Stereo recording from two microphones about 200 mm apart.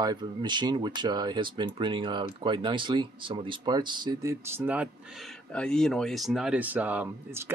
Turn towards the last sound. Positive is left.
turn(degrees=-10)  # may be behind; listen again after turning